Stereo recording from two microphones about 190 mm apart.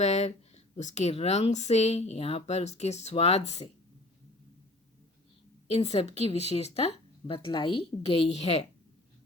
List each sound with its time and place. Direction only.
0.0 s speech: 35° left (ahead or behind)
5.6 s speech: 35° left (ahead or behind)